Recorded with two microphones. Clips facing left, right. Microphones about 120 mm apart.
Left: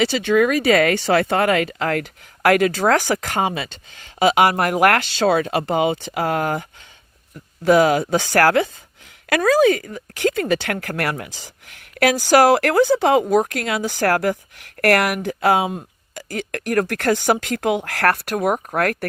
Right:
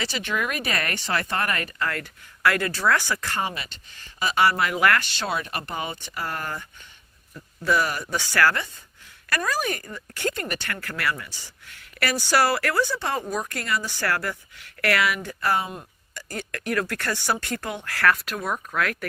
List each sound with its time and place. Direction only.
0.0 s speech: 90° left
4.4 s speech: 55° left (ahead or behind)
5.5 s speech: 90° left; by 11.4 s 65° left (ahead or behind)
12.0 s speech: 90° left
14.8 s speech: 65° left (ahead or behind); by 15.7 s 80° left
16.1 s speech: 90° left; by 16.7 s 70° left (ahead or behind)
16.8 s speech: 90° left; by 18.6 s 65° left (ahead or behind)
18.7 s speech: 55° left (ahead or behind)